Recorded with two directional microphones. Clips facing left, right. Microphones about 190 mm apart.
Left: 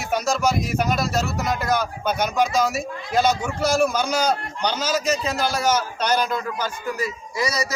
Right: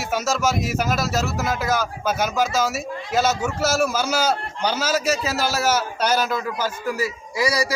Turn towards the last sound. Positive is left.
turn(degrees=-10)  # may be behind; listen again after turning